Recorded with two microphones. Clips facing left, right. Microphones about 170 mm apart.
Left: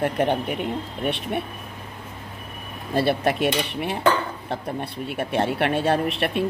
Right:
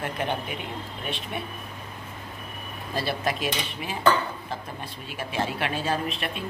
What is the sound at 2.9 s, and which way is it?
Speech, 60° left (ahead or behind).